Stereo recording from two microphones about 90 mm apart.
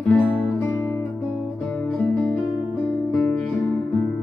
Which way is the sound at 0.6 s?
20° left (ahead or behind).